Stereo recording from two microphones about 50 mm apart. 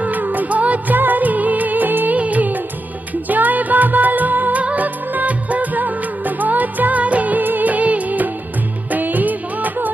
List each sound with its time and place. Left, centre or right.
0.0 s music: right
4.6 s music of bollywood: right
8.9 s music: right